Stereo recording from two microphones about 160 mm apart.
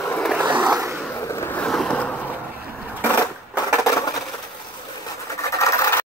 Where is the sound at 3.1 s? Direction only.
20° left (ahead or behind).